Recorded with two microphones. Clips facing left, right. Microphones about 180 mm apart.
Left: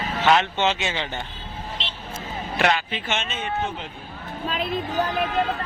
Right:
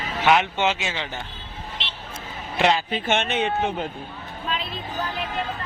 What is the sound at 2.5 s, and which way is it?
Speech, 20° right (ahead or behind).